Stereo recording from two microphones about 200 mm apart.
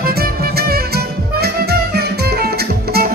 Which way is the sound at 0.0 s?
50° right (ahead or behind).